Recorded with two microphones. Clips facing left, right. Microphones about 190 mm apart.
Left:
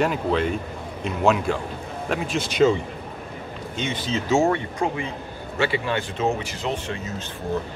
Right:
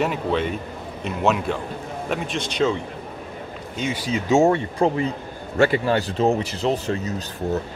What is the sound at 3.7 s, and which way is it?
Speech, 5° right (ahead or behind).